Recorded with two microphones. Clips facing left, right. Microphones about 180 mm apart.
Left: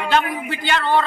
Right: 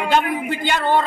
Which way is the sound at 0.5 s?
50° right (ahead or behind).